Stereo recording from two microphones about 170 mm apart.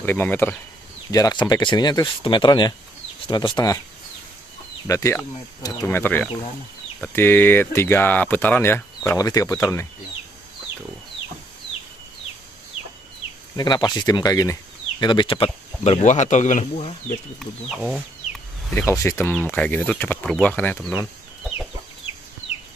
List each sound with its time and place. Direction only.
0.0 s speech: 10° left (ahead or behind)
1.1 s speech: 25° left (ahead or behind)
4.8 s speech: 20° left (ahead or behind)
13.6 s speech: 25° left (ahead or behind); by 17.2 s 40° left (ahead or behind)
17.4 s speech: centre (ahead or behind)
18.7 s speech: 15° left (ahead or behind)